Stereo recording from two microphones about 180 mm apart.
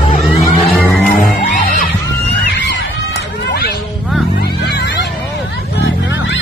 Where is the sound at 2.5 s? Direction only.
75° left (ahead or behind).